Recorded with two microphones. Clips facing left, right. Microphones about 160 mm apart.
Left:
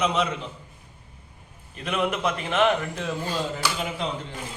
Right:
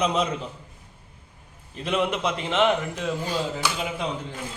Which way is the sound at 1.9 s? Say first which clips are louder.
Right 1 dB; 25° right (ahead or behind).